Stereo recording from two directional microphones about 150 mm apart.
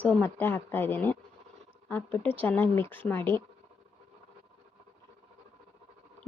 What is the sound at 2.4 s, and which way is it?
Speech, 10° left (ahead or behind).